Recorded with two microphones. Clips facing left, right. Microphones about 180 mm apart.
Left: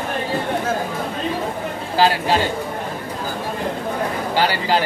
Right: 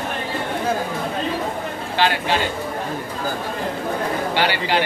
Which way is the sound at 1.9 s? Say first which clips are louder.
Left 3 dB; 35° left (ahead or behind).